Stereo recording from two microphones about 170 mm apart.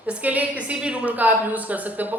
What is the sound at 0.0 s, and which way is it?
A woman's voice, 10° right (ahead or behind).